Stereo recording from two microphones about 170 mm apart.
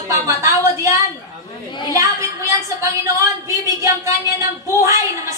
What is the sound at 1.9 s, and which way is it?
A woman's voice, 20° right (ahead or behind).